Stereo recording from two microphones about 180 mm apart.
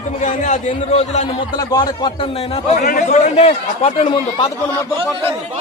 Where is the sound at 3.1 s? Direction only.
35° left (ahead or behind).